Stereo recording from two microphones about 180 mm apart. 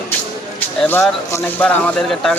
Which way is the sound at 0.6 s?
15° left (ahead or behind).